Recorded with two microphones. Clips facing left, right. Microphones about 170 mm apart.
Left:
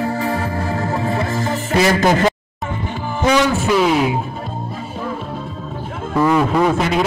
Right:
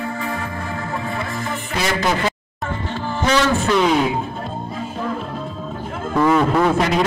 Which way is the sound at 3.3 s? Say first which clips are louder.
Left 1 dB; 10° left (ahead or behind).